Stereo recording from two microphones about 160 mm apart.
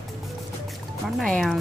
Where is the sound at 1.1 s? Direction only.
5° left (ahead or behind).